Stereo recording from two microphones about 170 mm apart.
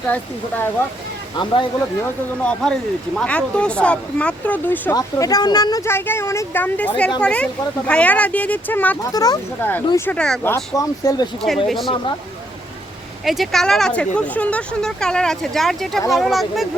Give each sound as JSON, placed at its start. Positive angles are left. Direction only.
{"t": 0.1, "sound": "speech", "side_deg": 10}
{"t": 2.4, "sound": "speech", "side_deg": 5}
{"t": 4.9, "sound": "speech", "side_deg": 20}
{"t": 9.1, "sound": "speech", "side_deg": 20}
{"t": 10.1, "sound": "speech", "side_deg": 5}
{"t": 10.5, "sound": "speech", "side_deg": 20}
{"t": 11.4, "sound": "speech", "side_deg": 0}
{"t": 13.2, "sound": "speech", "side_deg": 0}